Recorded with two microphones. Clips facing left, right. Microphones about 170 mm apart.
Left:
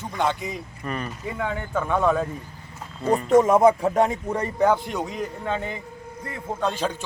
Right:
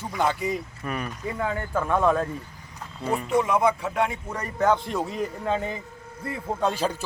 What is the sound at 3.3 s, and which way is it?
Speech, 45° left (ahead or behind).